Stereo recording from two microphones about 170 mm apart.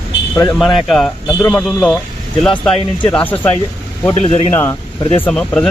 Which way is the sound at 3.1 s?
10° left (ahead or behind).